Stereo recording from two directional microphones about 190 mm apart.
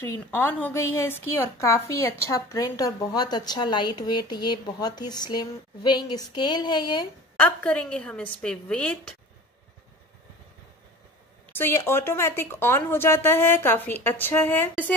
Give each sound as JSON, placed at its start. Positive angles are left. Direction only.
{"t": 0.0, "sound": "a woman's voice", "side_deg": 10}
{"t": 7.3, "sound": "a woman's voice", "side_deg": 5}
{"t": 11.5, "sound": "speech", "side_deg": 10}